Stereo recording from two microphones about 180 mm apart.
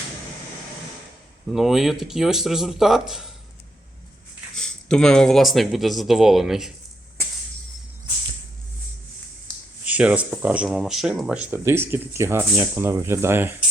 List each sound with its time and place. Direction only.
1.5 s speech: centre (ahead or behind)
4.5 s speech: 5° left (ahead or behind)
9.5 s a sound: 5° left (ahead or behind)
9.8 s speech: 10° right (ahead or behind)